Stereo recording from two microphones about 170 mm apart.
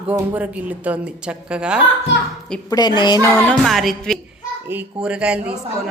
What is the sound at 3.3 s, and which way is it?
A woman's voice, 5° left (ahead or behind).